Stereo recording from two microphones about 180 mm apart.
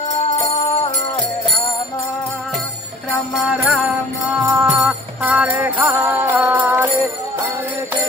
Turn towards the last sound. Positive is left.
turn(degrees=-10)  # may be behind; listen again after turning